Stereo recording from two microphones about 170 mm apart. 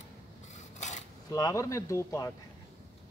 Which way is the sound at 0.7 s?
45° left (ahead or behind).